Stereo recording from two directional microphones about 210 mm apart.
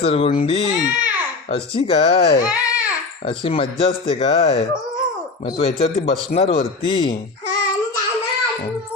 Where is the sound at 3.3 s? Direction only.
25° left (ahead or behind).